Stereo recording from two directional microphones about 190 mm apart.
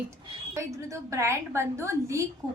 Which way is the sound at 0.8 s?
15° right (ahead or behind).